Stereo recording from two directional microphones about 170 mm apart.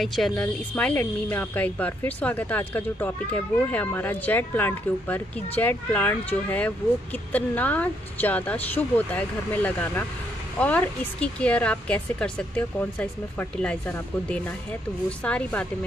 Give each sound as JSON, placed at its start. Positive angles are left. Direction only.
{"t": 0.0, "sound": "speech", "side_deg": 0}